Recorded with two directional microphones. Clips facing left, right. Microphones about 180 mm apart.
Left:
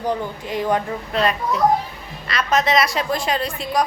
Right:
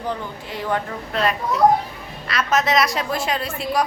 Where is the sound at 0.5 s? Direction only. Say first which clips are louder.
Left 4 dB; 15° left (ahead or behind).